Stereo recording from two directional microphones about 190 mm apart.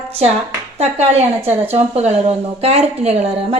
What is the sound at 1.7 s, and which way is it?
A woman's voice, 35° right (ahead or behind).